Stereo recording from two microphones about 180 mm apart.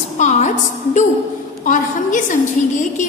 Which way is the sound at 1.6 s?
45° left (ahead or behind).